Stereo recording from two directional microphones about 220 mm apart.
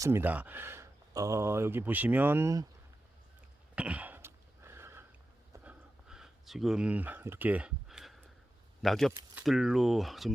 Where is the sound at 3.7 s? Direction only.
5° right (ahead or behind).